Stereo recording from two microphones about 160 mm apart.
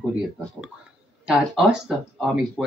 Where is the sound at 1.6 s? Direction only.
Centre (ahead or behind).